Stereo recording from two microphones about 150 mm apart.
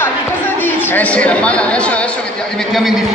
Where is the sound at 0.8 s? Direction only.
10° left (ahead or behind).